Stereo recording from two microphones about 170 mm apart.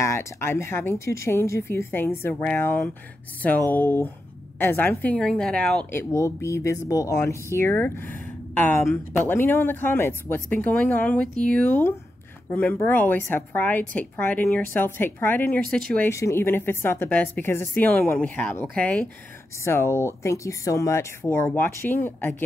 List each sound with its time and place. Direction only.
0.0 s a woman's voice: 15° left (ahead or behind)